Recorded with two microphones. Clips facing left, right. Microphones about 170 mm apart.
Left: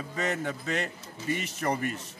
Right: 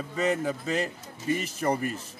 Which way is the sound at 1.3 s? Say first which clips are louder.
Right 3 dB; 35° right (ahead or behind).